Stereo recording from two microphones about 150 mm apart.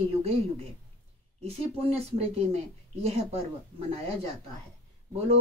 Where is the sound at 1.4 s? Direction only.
40° right (ahead or behind).